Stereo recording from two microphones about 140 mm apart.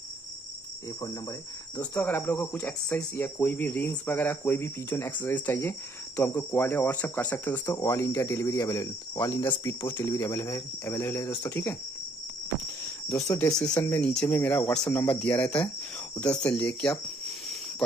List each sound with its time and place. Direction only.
2.0 s speech: 15° left (ahead or behind)
7.5 s speech: 25° left (ahead or behind)
13.4 s speech: 5° left (ahead or behind)